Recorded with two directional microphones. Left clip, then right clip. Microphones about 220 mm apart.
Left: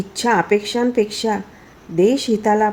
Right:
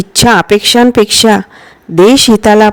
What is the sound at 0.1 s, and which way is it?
Speech, 45° right (ahead or behind).